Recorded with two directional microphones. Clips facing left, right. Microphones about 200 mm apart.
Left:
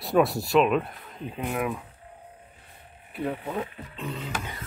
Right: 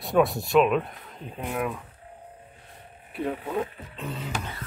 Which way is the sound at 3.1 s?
Centre (ahead or behind).